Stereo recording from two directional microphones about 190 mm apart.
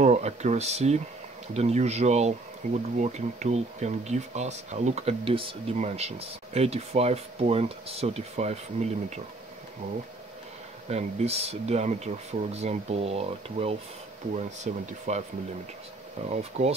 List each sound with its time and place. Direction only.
0.0 s speech: 35° right (ahead or behind)
10.9 s speech: 35° right (ahead or behind)
16.3 s speech: 35° right (ahead or behind)